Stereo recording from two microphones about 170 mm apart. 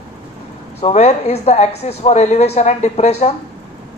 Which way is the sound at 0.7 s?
35° left (ahead or behind).